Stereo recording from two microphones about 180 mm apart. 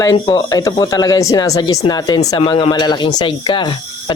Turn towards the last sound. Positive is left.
turn(degrees=25)  # may be behind; listen again after turning